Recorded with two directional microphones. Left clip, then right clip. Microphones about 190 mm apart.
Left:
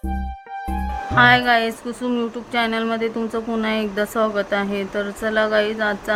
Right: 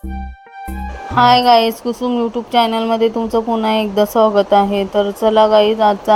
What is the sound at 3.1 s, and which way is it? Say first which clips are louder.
Speech: right 8 dB; centre (ahead or behind).